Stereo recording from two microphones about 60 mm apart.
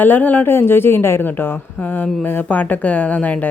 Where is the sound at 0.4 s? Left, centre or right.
Left.